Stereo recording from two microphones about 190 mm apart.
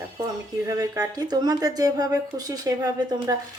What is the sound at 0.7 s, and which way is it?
Speech, 20° right (ahead or behind).